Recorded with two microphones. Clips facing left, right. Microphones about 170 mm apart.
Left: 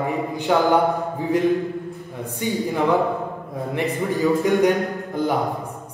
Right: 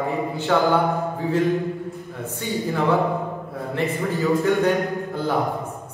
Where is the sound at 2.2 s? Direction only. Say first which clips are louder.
Left 2 dB; 15° left (ahead or behind).